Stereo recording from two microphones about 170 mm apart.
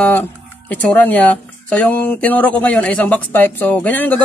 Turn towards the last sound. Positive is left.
turn(degrees=10)  # may be behind; listen again after turning